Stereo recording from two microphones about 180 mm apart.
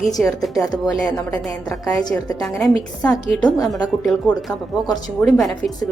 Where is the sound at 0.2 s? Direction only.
Centre (ahead or behind).